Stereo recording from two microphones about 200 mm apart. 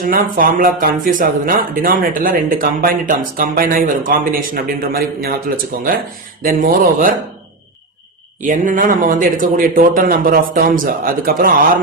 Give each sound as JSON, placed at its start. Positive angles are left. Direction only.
{"t": 0.0, "sound": "speech", "side_deg": -45}
{"t": 6.4, "sound": "speech", "side_deg": -45}
{"t": 8.4, "sound": "speech", "side_deg": -40}